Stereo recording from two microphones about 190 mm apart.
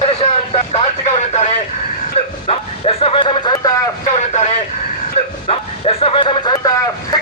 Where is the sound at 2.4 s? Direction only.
30° left (ahead or behind).